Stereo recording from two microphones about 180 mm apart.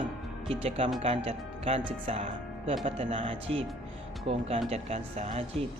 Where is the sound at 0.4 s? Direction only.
30° right (ahead or behind).